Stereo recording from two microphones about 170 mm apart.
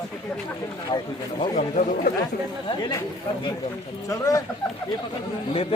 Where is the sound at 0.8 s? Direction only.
25° left (ahead or behind).